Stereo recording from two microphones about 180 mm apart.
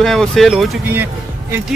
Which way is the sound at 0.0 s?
Centre (ahead or behind).